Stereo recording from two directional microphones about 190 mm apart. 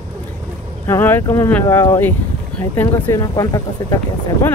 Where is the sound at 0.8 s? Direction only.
10° left (ahead or behind).